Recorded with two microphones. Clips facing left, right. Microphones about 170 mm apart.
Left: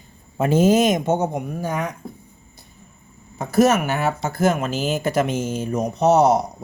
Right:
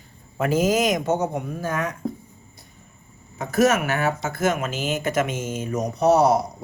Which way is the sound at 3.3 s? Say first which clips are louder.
Left 3 dB; 30° left (ahead or behind).